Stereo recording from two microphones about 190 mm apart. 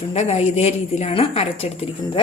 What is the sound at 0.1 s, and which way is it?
A woman's voice, 30° left (ahead or behind).